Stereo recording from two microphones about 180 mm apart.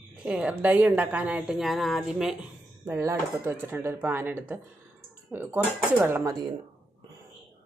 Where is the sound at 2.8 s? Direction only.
15° right (ahead or behind).